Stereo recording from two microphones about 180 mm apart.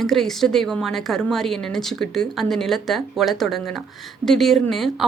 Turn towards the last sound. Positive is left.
turn(degrees=0)  # may be behind; listen again after turning